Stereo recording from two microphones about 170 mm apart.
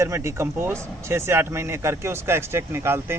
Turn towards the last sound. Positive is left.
turn(degrees=-15)  # may be behind; listen again after turning